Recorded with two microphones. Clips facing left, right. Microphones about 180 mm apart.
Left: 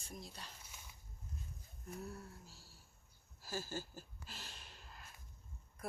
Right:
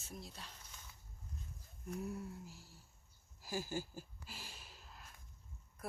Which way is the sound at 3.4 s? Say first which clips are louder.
Right 3 dB; 15° right (ahead or behind).